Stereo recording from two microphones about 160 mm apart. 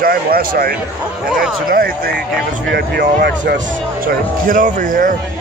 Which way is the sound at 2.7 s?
85° right.